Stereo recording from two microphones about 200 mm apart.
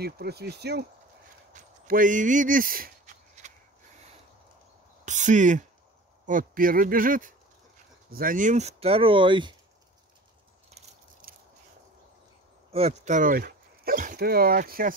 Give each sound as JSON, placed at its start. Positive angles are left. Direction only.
{"t": 0.0, "sound": "speech", "side_deg": -55}
{"t": 1.5, "sound": "a sound", "side_deg": -40}
{"t": 5.0, "sound": "speech", "side_deg": -40}
{"t": 10.7, "sound": "biting", "side_deg": -45}
{"t": 12.7, "sound": "speech", "side_deg": -35}